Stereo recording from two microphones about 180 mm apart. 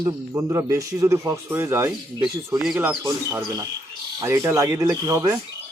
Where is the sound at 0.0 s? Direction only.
15° right (ahead or behind).